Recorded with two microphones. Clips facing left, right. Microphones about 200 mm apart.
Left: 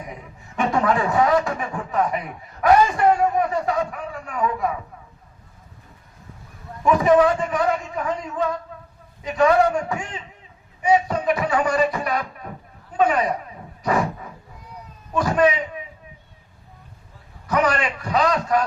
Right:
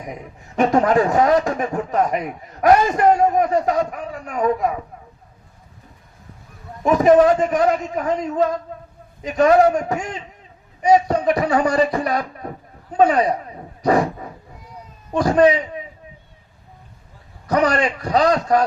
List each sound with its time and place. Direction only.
0.5 s a man's voice: 45° right (ahead or behind)
6.8 s a man's voice: 40° right (ahead or behind)
13.8 s a sound: 35° right (ahead or behind)
15.1 s speech: 35° right (ahead or behind)
17.5 s speech: 35° right (ahead or behind)